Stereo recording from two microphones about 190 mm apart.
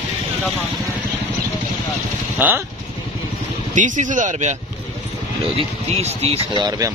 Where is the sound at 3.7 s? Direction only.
40° right (ahead or behind).